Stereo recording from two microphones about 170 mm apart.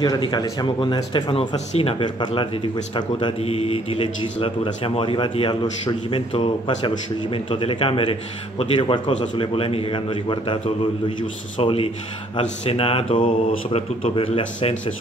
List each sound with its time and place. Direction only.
0.0 s speech: 25° left (ahead or behind)